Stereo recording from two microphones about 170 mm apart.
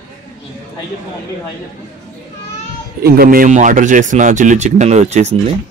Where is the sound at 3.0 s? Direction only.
60° right (ahead or behind); by 5.3 s 40° right (ahead or behind).